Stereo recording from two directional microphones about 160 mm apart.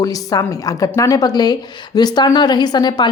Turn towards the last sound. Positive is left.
turn(degrees=25)  # may be behind; listen again after turning